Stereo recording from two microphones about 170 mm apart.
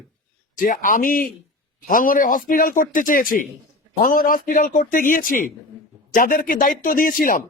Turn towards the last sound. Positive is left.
turn(degrees=55)  # may be behind; listen again after turning